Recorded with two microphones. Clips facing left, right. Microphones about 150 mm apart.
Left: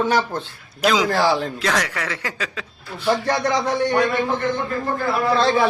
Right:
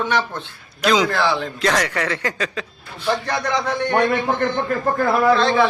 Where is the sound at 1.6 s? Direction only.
5° left (ahead or behind).